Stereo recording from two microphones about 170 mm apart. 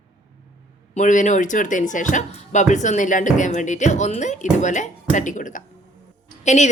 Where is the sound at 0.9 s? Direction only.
45° left (ahead or behind).